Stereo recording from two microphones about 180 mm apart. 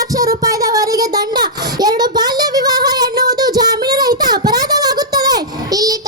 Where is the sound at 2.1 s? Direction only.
20° right (ahead or behind).